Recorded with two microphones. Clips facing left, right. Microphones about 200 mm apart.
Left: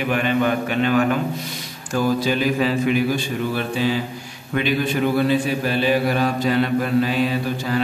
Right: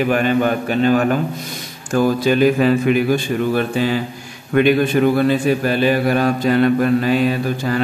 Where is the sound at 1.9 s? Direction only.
50° right (ahead or behind).